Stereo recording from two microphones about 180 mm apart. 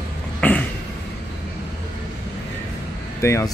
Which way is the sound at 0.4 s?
10° left (ahead or behind).